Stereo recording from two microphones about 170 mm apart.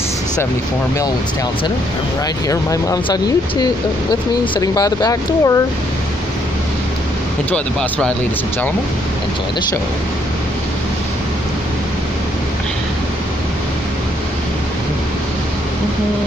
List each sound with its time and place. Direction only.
2.5 s speech: 20° left (ahead or behind)
4.6 s speech: 20° left (ahead or behind)